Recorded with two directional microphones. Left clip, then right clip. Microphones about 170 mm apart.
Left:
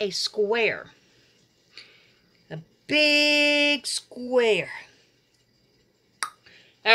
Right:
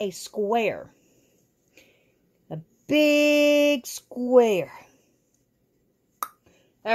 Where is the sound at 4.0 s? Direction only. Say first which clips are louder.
Right 4 dB; 65° right (ahead or behind).